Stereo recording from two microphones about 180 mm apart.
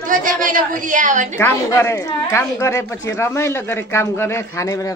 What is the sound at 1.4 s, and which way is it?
Speech, 15° left (ahead or behind).